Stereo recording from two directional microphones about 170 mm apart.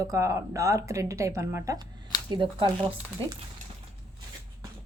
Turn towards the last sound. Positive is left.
turn(degrees=-30)  # may be behind; listen again after turning